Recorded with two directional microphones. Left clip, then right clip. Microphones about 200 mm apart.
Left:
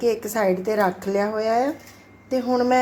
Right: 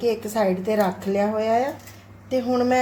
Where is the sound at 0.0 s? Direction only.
30° left (ahead or behind).